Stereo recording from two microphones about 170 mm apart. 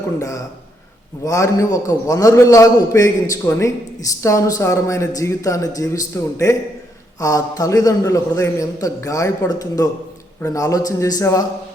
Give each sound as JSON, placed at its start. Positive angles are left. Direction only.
{"t": 0.2, "sound": "a man's voice", "side_deg": 20}